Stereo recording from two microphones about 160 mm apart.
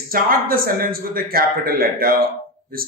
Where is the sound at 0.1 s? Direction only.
65° right (ahead or behind).